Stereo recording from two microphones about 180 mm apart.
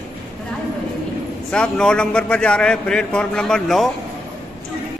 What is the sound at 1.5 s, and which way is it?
Speech, 5° left (ahead or behind).